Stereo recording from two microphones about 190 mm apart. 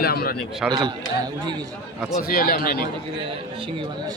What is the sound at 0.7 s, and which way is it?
Speech, 20° right (ahead or behind).